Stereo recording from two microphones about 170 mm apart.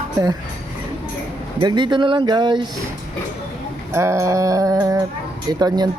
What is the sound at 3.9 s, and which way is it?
Speech, 15° right (ahead or behind).